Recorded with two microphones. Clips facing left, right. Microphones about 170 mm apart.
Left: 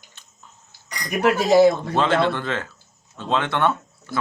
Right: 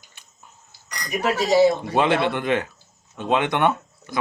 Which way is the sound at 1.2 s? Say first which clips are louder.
Left 3 dB; 55° left (ahead or behind).